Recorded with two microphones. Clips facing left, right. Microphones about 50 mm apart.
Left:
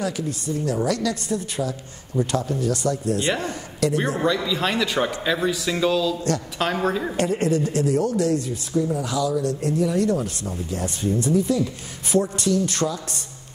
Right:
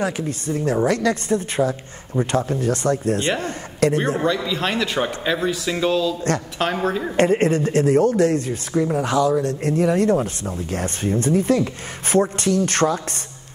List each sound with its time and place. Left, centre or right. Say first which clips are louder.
0.0 s a woman's voice: right 3 dB; right
4.2 s speech: right 1 dB; centre
7.2 s speech: right 7 dB; right
10.7 s speech: right 2 dB; right